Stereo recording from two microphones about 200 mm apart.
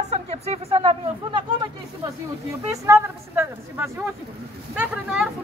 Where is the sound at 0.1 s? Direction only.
30° right (ahead or behind).